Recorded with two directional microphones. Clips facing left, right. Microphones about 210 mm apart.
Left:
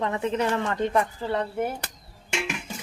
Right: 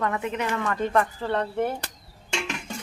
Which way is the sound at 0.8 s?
15° left (ahead or behind).